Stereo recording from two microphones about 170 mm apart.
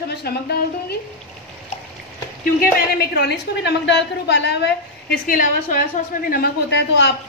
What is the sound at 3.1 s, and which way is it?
A woman's voice, 80° left.